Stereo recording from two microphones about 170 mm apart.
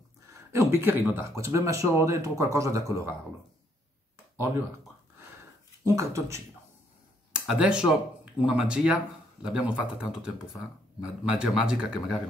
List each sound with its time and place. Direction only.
0.3 s speech: 15° right (ahead or behind)
5.9 s speech: 15° right (ahead or behind)
7.3 s speech: 5° right (ahead or behind)